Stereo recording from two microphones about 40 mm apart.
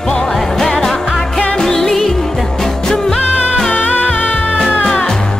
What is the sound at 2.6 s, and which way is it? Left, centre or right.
Music, centre.